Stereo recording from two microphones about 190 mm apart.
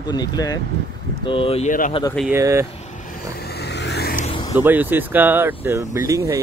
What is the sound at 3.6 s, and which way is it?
Vehicle, 60° left (ahead or behind).